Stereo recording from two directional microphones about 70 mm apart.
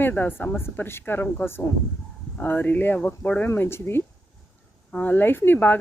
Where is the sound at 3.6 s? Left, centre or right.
Left.